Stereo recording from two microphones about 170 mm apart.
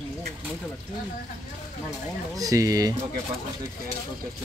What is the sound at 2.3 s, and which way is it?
Speech, 20° right (ahead or behind).